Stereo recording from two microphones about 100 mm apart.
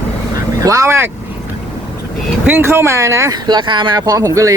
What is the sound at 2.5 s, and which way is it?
Speech, 20° right (ahead or behind).